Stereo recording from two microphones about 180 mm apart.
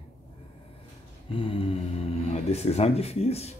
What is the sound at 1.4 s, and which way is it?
A man's voice, 30° left (ahead or behind).